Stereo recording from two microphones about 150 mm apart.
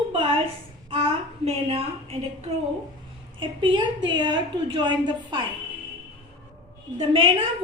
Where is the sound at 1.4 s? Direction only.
40° right (ahead or behind).